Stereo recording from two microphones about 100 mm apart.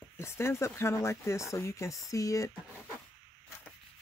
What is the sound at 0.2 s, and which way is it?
Speech, 25° left (ahead or behind).